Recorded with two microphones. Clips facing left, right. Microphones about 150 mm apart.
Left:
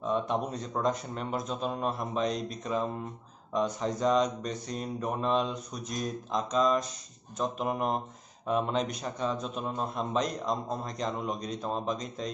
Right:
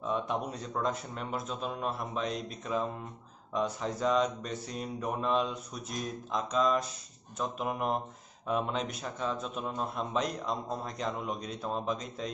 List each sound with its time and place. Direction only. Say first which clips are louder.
0.1 s a man's voice: left 3 dB; 5° right (ahead or behind)